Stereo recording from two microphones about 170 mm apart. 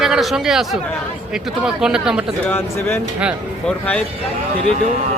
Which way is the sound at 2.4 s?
10° left (ahead or behind).